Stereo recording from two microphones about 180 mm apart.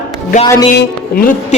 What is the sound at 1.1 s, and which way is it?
Speech, 50° left (ahead or behind).